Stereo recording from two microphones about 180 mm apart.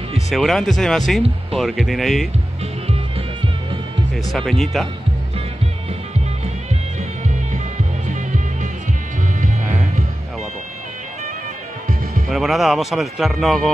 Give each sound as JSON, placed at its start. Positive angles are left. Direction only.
{"t": 0.3, "sound": "speech", "side_deg": 0}
{"t": 4.3, "sound": "speech", "side_deg": 0}
{"t": 8.1, "sound": "music", "side_deg": -45}
{"t": 12.3, "sound": "speech", "side_deg": 0}